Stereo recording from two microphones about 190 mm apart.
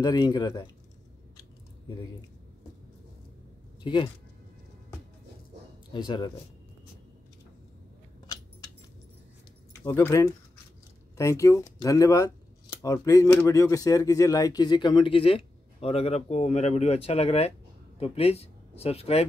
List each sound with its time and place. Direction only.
0.0 s speech: 20° left (ahead or behind)
3.8 s speech: 25° left (ahead or behind)
5.9 s speech: 25° left (ahead or behind)
9.8 s speech: 10° left (ahead or behind); by 19.2 s 35° left (ahead or behind)